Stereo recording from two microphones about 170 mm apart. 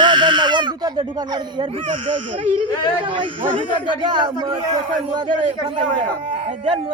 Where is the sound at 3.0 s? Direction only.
30° right (ahead or behind).